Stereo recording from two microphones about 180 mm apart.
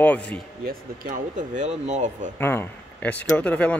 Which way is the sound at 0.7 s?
50° right (ahead or behind).